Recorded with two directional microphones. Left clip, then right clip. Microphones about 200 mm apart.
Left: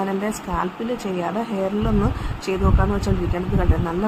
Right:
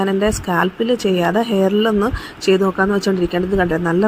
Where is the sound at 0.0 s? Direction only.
30° right (ahead or behind).